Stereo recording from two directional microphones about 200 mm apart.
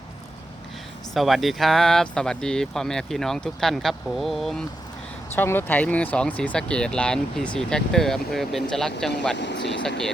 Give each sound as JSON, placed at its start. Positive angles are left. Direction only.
{"t": 1.1, "sound": "speech", "side_deg": 0}
{"t": 9.3, "sound": "speech", "side_deg": 60}